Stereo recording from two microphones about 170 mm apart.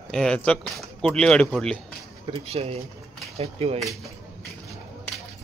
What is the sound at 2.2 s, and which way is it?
Speech, 30° right (ahead or behind).